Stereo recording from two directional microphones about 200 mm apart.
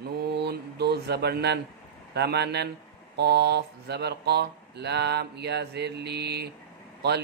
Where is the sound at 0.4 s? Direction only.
55° right (ahead or behind).